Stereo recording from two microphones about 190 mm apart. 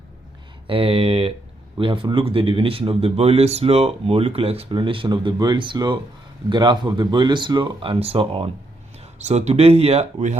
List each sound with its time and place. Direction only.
0.7 s speech: 30° right (ahead or behind)